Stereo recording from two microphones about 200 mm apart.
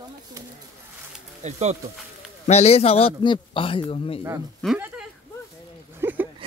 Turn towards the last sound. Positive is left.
turn(degrees=-10)  # may be behind; listen again after turning